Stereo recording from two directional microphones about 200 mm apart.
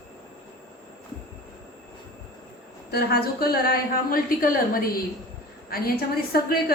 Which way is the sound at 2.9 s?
50° left (ahead or behind).